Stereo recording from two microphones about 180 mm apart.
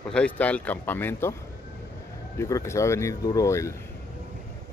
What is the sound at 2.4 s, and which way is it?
Speech, 15° left (ahead or behind).